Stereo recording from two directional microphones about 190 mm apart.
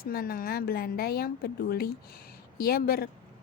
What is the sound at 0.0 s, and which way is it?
A woman's voice, 50° left (ahead or behind).